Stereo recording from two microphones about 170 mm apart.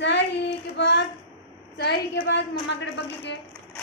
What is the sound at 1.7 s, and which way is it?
A woman's voice, 90° left.